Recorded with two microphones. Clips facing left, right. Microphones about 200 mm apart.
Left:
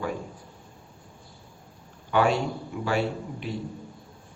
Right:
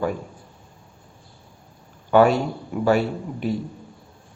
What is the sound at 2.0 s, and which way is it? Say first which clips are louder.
Speech: right 7 dB; 45° right (ahead or behind).